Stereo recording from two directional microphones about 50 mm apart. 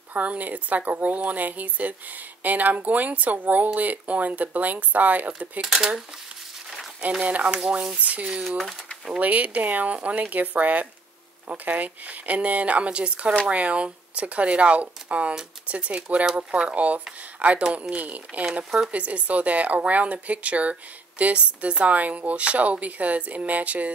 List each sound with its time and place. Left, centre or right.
0.1 s speech: right
5.6 s speech: centre
7.0 s speech: right
8.5 s speech: centre
9.2 s speech: right